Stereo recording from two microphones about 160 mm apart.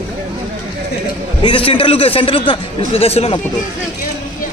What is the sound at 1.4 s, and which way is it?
A man's voice, 35° left (ahead or behind).